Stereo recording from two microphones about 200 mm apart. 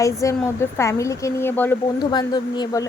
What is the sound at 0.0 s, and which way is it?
A woman's voice, 15° left (ahead or behind).